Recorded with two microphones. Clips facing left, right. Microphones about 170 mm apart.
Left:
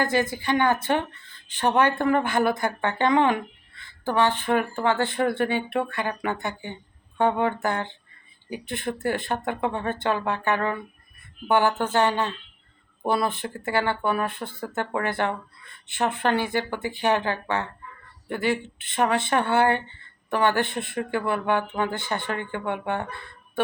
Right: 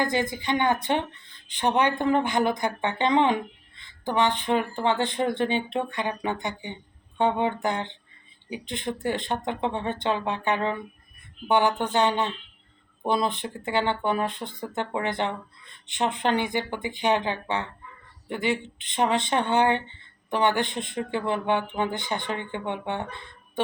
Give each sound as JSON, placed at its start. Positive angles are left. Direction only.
{"t": 0.0, "sound": "speech", "side_deg": -15}